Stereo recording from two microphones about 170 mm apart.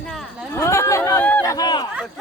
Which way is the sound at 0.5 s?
15° left (ahead or behind).